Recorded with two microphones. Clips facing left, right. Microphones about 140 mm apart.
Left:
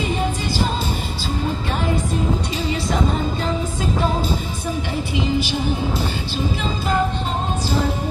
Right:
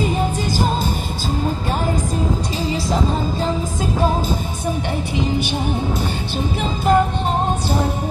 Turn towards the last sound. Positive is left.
turn(degrees=-50)  # may be behind; listen again after turning